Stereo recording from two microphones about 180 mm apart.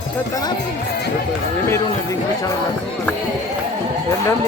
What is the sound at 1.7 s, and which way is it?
Speech, 15° left (ahead or behind).